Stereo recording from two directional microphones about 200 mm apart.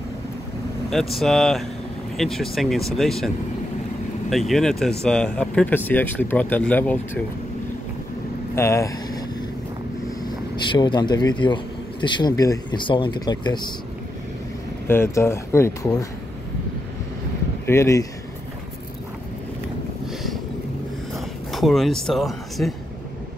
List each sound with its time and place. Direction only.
0.8 s speech: centre (ahead or behind)
4.3 s speech: centre (ahead or behind)
8.5 s speech: 15° left (ahead or behind)
10.2 s speech: 20° left (ahead or behind)
14.9 s speech: 10° left (ahead or behind)
17.6 s speech: 15° left (ahead or behind)
21.1 s speech: centre (ahead or behind)